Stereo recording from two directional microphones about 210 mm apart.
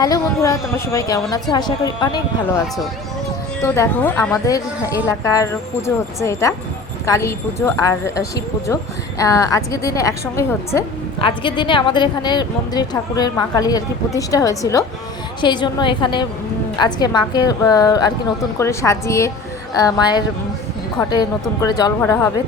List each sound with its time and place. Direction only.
0.0 s a woman's voice: 15° left (ahead or behind)
3.6 s a woman's voice: 10° left (ahead or behind)
11.2 s a woman's voice: 25° left (ahead or behind)